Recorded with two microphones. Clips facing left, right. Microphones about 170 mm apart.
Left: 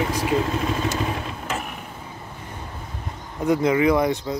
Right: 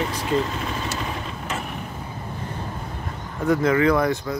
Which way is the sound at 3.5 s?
15° left (ahead or behind).